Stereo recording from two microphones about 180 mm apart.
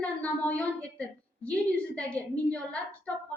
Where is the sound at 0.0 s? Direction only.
5° left (ahead or behind).